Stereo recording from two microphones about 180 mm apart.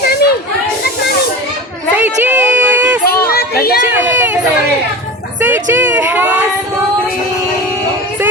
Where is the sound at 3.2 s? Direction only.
60° left (ahead or behind).